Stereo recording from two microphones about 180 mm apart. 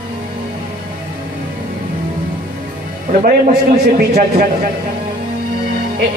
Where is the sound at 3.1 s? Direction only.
50° right (ahead or behind).